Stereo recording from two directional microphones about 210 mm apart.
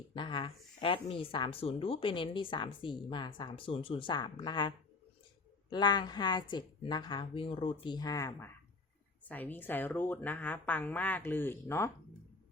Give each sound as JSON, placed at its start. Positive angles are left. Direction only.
{"t": 0.1, "sound": "a woman's voice", "side_deg": 20}